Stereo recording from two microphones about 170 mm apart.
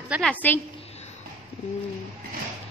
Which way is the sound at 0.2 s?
10° left (ahead or behind).